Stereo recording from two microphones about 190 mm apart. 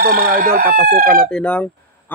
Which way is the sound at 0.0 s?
50° right (ahead or behind).